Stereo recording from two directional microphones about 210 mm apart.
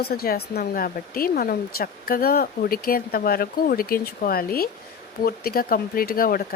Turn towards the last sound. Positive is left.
turn(degrees=45)  # may be behind; listen again after turning